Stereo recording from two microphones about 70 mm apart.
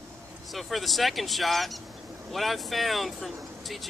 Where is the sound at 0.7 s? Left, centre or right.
Centre.